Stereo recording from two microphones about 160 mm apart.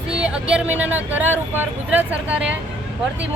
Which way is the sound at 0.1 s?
5° right (ahead or behind).